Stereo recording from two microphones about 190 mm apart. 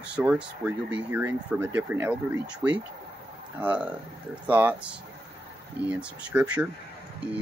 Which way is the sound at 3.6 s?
5° right (ahead or behind).